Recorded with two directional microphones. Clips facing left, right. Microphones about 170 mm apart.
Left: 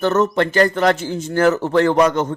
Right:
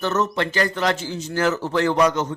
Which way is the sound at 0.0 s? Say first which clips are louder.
Left 6 dB; 50° left (ahead or behind).